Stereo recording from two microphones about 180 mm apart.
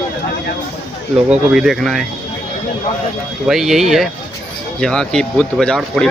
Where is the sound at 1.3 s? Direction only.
5° right (ahead or behind).